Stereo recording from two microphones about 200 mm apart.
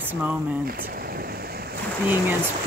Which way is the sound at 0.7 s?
45° right (ahead or behind).